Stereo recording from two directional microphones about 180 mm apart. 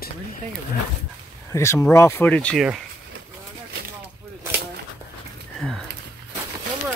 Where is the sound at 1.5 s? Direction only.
15° left (ahead or behind).